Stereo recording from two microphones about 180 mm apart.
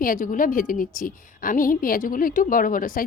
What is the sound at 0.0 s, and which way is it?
Speech, 50° left (ahead or behind).